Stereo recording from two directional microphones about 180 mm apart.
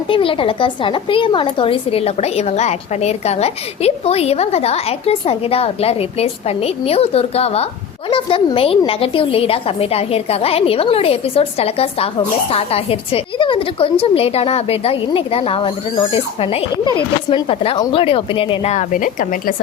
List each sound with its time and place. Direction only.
0.1 s a woman's voice: 30° left (ahead or behind); by 19.5 s 50° left (ahead or behind)